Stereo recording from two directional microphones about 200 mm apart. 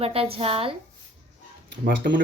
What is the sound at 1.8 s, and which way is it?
Speech, 55° right (ahead or behind).